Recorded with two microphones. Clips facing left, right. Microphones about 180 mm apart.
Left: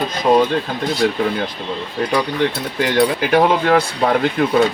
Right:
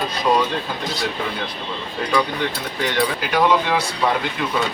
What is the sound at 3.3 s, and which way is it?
Speech, 50° left (ahead or behind).